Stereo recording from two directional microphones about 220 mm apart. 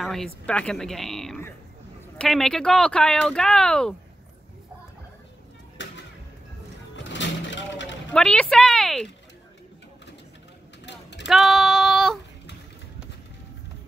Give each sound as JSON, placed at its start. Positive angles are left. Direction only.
{"t": 0.0, "sound": "speech", "side_deg": 0}
{"t": 7.0, "sound": "vehicle", "side_deg": 55}
{"t": 8.1, "sound": "a sound", "side_deg": 5}
{"t": 10.9, "sound": "vehicle", "side_deg": 50}
{"t": 11.2, "sound": "female singing", "side_deg": 0}